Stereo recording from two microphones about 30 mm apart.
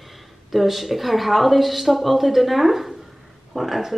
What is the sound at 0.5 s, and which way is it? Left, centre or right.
Speech, centre.